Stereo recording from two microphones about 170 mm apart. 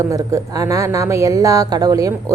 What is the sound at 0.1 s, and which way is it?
A woman's voice, 20° right (ahead or behind).